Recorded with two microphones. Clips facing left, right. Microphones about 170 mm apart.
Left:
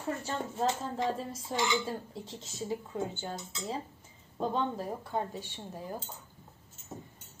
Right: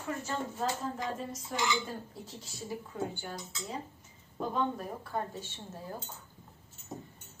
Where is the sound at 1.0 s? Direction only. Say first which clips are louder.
Left 4 dB; 30° left (ahead or behind).